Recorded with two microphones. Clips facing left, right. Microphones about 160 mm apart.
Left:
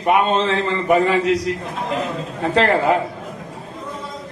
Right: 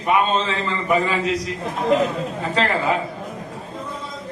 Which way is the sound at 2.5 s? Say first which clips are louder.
Left 5 dB; 65° left (ahead or behind).